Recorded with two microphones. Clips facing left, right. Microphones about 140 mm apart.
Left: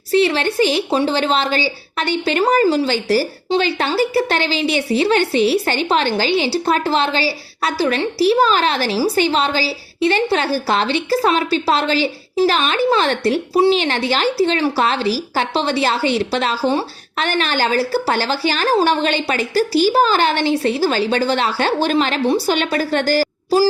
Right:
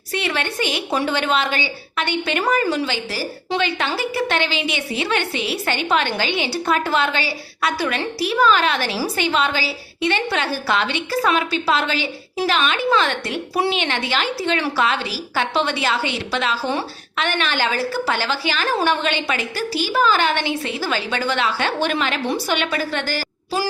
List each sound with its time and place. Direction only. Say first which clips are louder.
0.1 s a woman's voice: left 9 dB; 30° left (ahead or behind)